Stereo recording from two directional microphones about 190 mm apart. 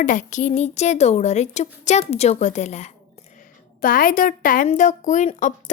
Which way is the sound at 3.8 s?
45° left (ahead or behind).